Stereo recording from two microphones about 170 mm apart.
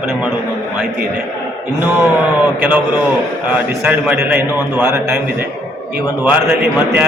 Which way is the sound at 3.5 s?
10° right (ahead or behind).